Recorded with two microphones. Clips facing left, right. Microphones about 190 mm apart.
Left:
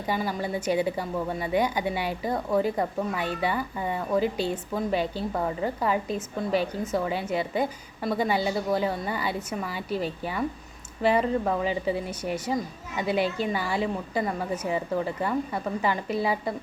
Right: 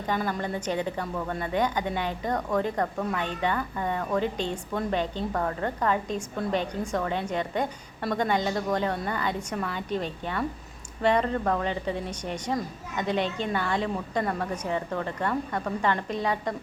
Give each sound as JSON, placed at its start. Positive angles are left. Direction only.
{"t": 0.0, "sound": "a woman's voice", "side_deg": 10}